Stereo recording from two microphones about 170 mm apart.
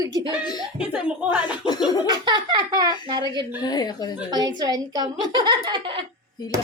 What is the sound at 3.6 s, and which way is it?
Speech, 25° left (ahead or behind).